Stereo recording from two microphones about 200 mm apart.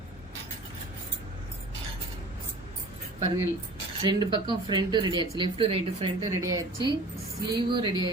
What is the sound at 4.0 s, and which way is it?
Speech, 20° right (ahead or behind).